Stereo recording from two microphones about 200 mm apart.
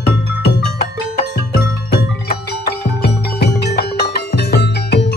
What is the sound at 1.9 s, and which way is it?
Music, 50° left (ahead or behind).